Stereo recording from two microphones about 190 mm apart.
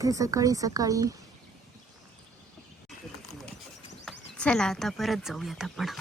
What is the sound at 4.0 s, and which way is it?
Speech, 5° left (ahead or behind).